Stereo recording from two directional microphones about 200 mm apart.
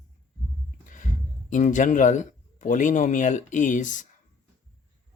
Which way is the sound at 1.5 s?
40° left (ahead or behind).